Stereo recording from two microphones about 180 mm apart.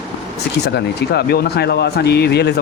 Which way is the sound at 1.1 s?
65° left (ahead or behind).